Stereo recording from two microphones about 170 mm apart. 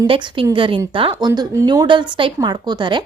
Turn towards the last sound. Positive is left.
turn(degrees=-25)  # may be behind; listen again after turning